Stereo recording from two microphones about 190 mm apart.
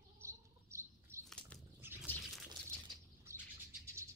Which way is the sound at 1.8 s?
10° right (ahead or behind).